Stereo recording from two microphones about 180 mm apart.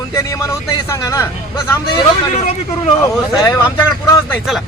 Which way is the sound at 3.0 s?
15° left (ahead or behind).